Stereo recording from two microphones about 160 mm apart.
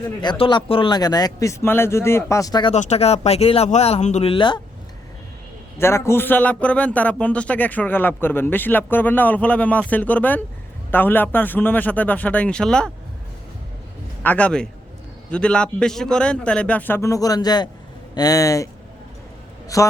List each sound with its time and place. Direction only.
0.2 s a man's voice: 30° left (ahead or behind)
2.7 s speech: 40° left (ahead or behind)
5.8 s a man's voice: 15° left (ahead or behind)
14.2 s a man's voice: 10° left (ahead or behind)